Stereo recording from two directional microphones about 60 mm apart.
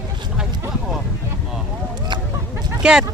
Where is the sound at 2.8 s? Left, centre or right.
Centre.